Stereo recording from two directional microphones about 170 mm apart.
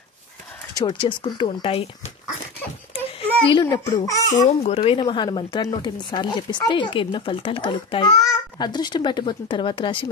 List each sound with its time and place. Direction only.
0.7 s speech: 25° left (ahead or behind)
2.9 s a sound: 30° left (ahead or behind)
3.6 s speech: 20° left (ahead or behind)
4.5 s speech: 35° left (ahead or behind)